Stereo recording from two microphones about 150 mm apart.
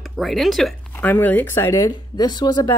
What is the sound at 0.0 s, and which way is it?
Speech, centre (ahead or behind).